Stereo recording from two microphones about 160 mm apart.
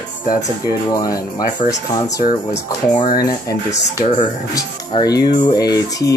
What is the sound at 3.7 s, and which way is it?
Speech, 50° left (ahead or behind).